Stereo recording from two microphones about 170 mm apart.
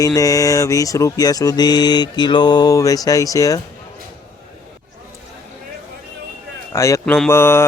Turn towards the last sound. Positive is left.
turn(degrees=15)  # may be behind; listen again after turning